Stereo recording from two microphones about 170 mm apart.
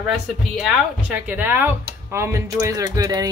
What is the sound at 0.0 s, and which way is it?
Speech, centre (ahead or behind).